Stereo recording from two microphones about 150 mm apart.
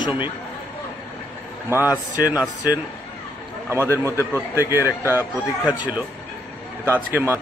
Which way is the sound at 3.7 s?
15° right (ahead or behind).